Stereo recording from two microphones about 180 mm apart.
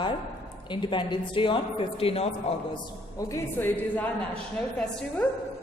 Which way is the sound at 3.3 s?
15° left (ahead or behind).